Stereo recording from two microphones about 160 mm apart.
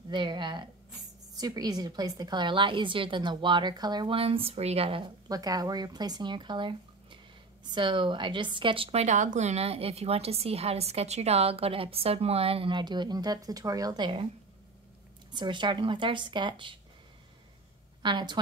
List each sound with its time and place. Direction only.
0.1 s a woman's voice: 30° right (ahead or behind)
15.3 s a woman's voice: 30° right (ahead or behind)
18.0 s a woman's voice: 30° right (ahead or behind)